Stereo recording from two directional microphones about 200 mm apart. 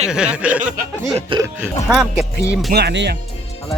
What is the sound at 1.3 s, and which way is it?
Speech, 25° right (ahead or behind).